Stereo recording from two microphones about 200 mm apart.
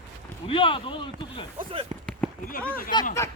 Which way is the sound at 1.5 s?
30° right (ahead or behind).